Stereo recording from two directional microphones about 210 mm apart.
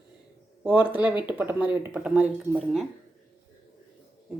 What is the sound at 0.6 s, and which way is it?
Speech, 5° right (ahead or behind).